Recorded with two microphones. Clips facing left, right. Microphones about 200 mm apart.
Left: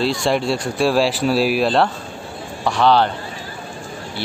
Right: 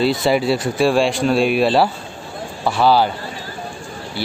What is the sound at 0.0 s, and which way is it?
Speech, centre (ahead or behind).